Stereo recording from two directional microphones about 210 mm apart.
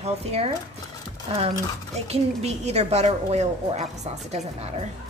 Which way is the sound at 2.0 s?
30° right (ahead or behind).